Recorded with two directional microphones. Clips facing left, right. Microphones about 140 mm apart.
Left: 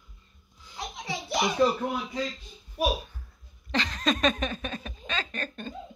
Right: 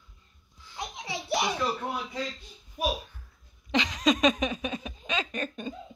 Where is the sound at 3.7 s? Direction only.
15° right (ahead or behind).